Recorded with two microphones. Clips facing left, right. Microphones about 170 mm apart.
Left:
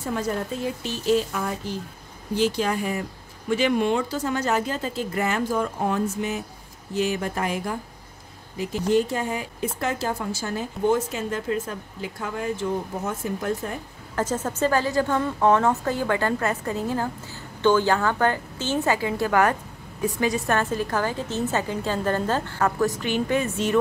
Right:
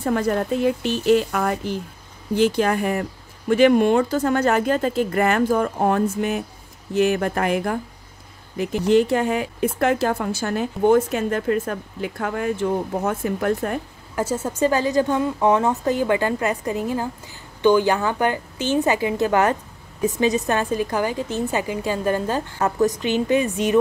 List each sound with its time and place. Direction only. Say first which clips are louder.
0.0 s speech: right 6 dB; 60° right (ahead or behind)
14.1 s a woman's voice: right 2 dB; 10° right (ahead or behind)